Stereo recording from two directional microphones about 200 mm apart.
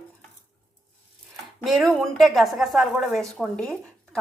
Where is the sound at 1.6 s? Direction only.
Centre (ahead or behind).